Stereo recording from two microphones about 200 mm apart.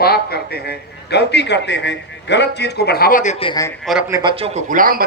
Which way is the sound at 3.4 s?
20° left (ahead or behind).